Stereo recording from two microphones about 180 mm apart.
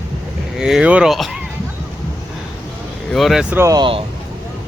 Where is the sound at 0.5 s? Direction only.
5° right (ahead or behind).